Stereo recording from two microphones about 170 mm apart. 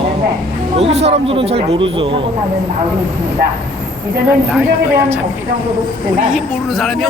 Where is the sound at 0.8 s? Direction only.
40° right (ahead or behind).